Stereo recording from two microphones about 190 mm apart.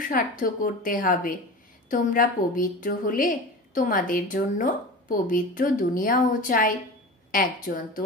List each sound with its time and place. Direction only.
0.1 s a woman's voice: 45° left (ahead or behind)